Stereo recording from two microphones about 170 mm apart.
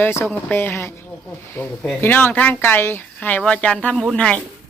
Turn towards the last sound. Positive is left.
turn(degrees=5)  # may be behind; listen again after turning